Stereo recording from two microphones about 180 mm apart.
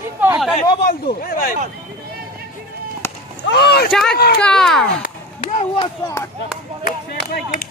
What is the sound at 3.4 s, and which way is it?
Speech, 65° left (ahead or behind).